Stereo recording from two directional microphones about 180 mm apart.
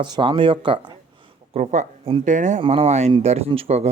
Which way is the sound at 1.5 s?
40° right (ahead or behind).